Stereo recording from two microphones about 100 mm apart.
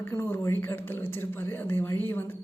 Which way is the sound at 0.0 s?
20° left (ahead or behind).